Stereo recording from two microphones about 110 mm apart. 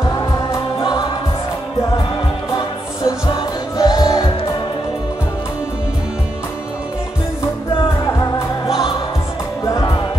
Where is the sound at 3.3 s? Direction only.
35° left (ahead or behind).